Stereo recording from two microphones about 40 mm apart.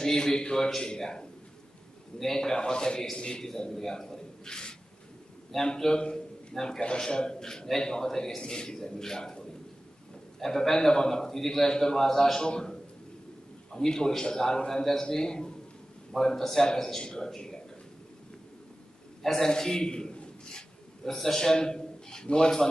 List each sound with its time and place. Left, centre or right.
0.0 s a man's voice: centre
10.4 s a man's voice: centre
19.2 s a man's voice: centre
21.0 s a man's voice: centre